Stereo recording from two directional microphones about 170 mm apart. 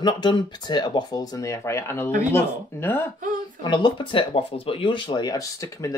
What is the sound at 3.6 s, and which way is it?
Speech, 25° left (ahead or behind).